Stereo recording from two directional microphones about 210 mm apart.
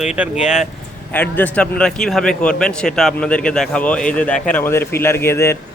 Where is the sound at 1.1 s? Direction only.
10° left (ahead or behind).